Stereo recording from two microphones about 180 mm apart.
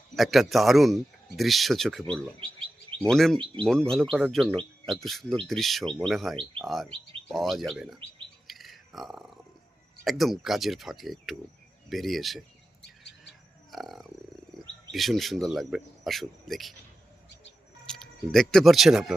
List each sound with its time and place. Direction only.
0.2 s speech: centre (ahead or behind)
3.1 s speech: centre (ahead or behind)
8.4 s a sound: centre (ahead or behind)
10.0 s speech: centre (ahead or behind)
12.8 s bird: 70° left (ahead or behind)
13.7 s a sound: centre (ahead or behind)
14.5 s bird: centre (ahead or behind)
14.9 s speech: centre (ahead or behind)
17.8 s speech: centre (ahead or behind)